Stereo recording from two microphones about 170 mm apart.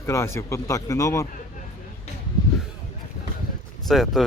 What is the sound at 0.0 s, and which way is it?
Speech, 15° left (ahead or behind).